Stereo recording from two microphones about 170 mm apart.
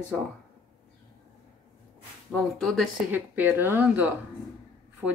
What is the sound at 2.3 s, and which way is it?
Speech, 5° left (ahead or behind).